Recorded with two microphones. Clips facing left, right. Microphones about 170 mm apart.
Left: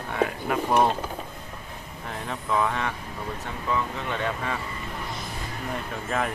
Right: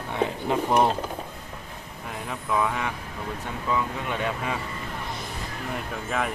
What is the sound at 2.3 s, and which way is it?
Speech, 5° right (ahead or behind).